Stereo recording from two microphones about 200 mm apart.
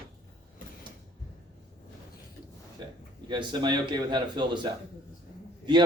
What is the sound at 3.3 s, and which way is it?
A man's voice, 20° right (ahead or behind).